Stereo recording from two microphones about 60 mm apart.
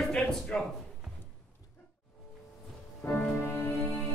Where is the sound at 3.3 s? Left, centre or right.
Left.